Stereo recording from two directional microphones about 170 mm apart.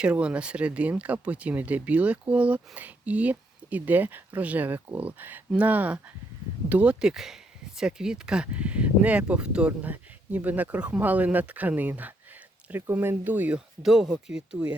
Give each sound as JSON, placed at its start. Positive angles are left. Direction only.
{"t": 0.0, "sound": "speech", "side_deg": -5}